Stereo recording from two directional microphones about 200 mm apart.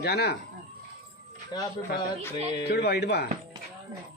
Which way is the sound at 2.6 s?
55° left (ahead or behind).